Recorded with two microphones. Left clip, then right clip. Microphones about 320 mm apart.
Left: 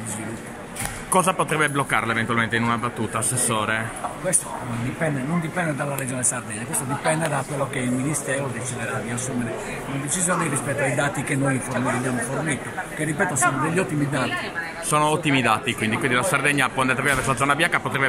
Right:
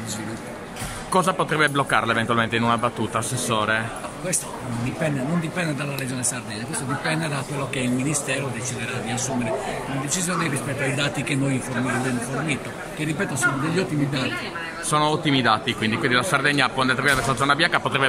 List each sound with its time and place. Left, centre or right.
1.1 s speech: centre
7.1 s speech: centre
13.2 s speech: centre